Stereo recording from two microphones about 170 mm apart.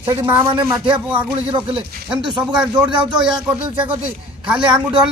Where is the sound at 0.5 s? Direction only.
25° right (ahead or behind).